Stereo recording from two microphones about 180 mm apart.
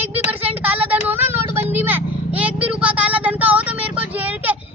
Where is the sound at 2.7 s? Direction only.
5° right (ahead or behind).